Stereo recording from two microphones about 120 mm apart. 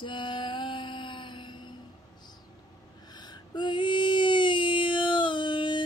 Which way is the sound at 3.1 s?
35° left (ahead or behind).